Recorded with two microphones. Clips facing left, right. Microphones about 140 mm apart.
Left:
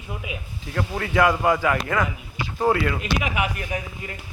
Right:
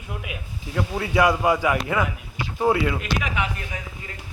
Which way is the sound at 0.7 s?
10° right (ahead or behind).